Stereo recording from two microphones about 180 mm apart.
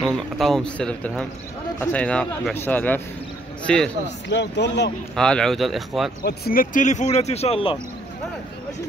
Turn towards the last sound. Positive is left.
turn(degrees=30)  # may be behind; listen again after turning